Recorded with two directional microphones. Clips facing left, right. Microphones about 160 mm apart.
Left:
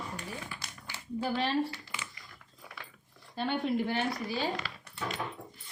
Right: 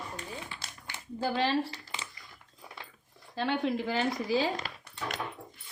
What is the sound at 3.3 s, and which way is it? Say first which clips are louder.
Speech: right 1 dB; 90° right.